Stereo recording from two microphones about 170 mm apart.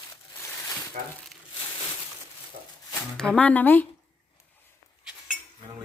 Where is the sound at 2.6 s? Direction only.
40° right (ahead or behind).